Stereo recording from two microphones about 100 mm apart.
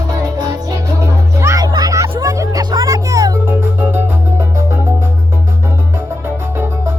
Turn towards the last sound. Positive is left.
turn(degrees=-25)  # may be behind; listen again after turning